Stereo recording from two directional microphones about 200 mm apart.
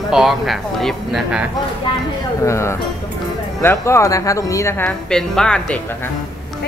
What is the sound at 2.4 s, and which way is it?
Speech, 15° left (ahead or behind).